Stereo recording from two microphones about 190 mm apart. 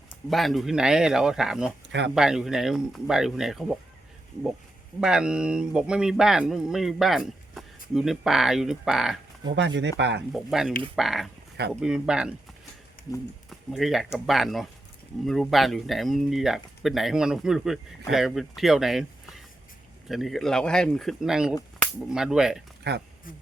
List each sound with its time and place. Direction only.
0.3 s speech: centre (ahead or behind)
4.9 s speech: 5° right (ahead or behind)
9.6 s speech: 70° right (ahead or behind)
10.3 s speech: centre (ahead or behind)
13.5 s speech: centre (ahead or behind)
20.1 s speech: centre (ahead or behind)
22.8 s a man's voice: 60° right (ahead or behind)